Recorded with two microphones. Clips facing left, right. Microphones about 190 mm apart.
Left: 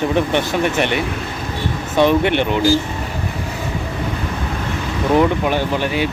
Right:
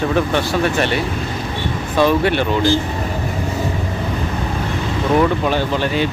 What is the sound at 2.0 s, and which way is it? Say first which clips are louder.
Speech: left 1 dB; 20° left (ahead or behind).